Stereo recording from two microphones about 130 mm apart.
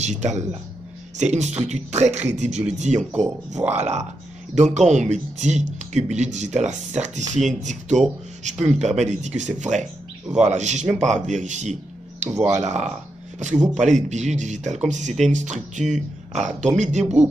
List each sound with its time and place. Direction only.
0.0 s speech: 60° right (ahead or behind)
12.3 s speech: 25° right (ahead or behind)
12.5 s speech: 60° right (ahead or behind)